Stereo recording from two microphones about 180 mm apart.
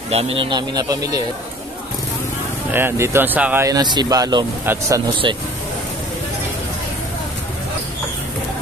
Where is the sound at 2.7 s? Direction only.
15° right (ahead or behind).